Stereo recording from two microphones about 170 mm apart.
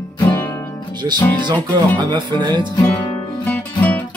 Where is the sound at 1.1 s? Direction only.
25° right (ahead or behind).